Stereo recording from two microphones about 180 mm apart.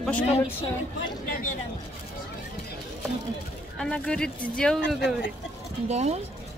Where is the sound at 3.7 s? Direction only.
5° left (ahead or behind).